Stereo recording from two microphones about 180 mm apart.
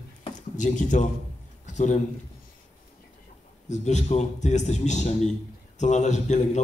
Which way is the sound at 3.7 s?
40° left (ahead or behind).